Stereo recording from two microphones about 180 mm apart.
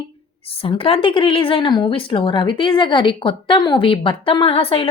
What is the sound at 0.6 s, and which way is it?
Speech, 30° left (ahead or behind).